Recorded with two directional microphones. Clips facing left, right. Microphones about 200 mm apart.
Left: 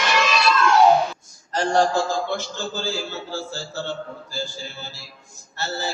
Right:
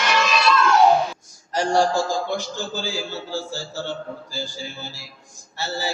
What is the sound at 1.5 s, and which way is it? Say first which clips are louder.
A man's voice: even; 15° right (ahead or behind).